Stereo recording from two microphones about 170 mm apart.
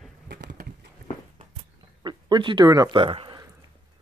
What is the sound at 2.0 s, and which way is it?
Speech, 25° right (ahead or behind).